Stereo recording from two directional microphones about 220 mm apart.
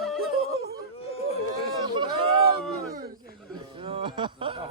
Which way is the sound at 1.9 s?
25° right (ahead or behind).